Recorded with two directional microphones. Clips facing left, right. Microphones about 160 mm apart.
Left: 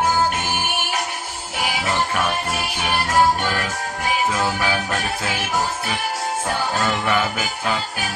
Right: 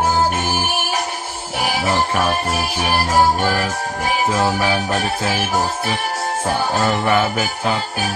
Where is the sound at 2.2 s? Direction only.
30° right (ahead or behind).